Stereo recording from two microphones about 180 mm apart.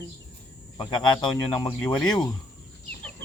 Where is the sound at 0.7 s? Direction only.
25° left (ahead or behind).